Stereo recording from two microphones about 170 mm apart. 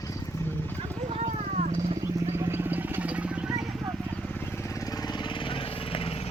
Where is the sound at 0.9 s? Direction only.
40° right (ahead or behind).